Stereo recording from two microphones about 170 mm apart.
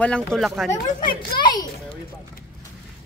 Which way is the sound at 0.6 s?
25° left (ahead or behind).